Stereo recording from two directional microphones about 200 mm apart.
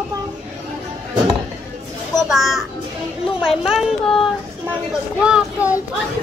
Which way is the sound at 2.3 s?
Centre (ahead or behind).